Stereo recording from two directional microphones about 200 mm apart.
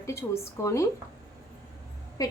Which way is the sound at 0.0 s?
15° left (ahead or behind).